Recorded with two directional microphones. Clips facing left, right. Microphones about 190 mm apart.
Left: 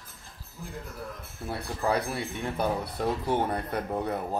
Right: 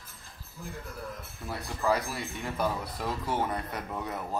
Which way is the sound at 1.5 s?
25° left (ahead or behind).